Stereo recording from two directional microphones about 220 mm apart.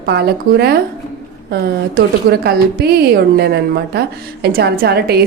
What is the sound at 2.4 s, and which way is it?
A woman's voice, 45° right (ahead or behind).